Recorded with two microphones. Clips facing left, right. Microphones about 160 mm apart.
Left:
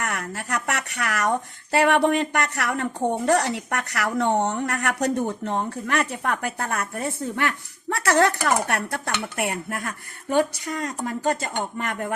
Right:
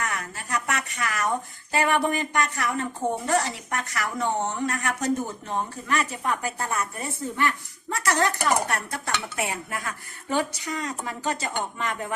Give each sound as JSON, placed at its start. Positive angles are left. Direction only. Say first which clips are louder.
{"t": 0.0, "sound": "a woman's voice", "louder": "left 2 dB", "side_deg": 65}